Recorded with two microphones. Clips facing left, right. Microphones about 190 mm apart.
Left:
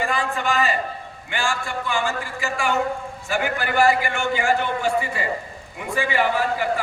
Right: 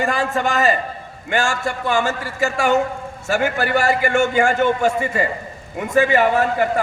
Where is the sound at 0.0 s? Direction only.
45° right (ahead or behind).